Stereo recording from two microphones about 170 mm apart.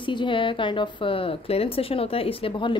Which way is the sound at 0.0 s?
30° left (ahead or behind).